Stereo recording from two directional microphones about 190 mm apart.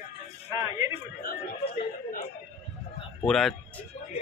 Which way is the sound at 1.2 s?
50° left (ahead or behind).